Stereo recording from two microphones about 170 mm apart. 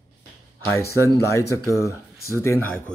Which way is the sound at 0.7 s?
15° left (ahead or behind).